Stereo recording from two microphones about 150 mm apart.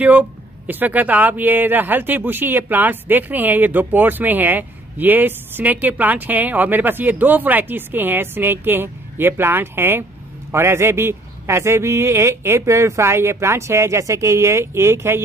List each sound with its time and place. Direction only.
0.0 s speech: 10° right (ahead or behind)